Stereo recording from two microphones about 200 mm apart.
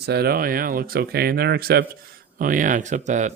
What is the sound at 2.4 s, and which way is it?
Speech, 40° right (ahead or behind).